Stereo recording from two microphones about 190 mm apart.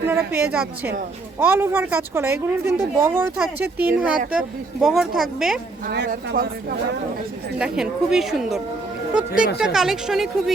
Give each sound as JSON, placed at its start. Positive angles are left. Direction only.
{"t": 0.1, "sound": "a woman's voice", "side_deg": -10}
{"t": 5.8, "sound": "speech", "side_deg": -55}
{"t": 7.6, "sound": "speech", "side_deg": -5}